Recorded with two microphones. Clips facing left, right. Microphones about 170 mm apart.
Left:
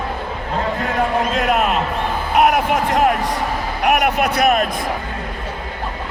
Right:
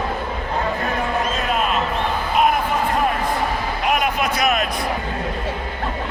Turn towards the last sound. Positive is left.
turn(degrees=65)  # may be behind; listen again after turning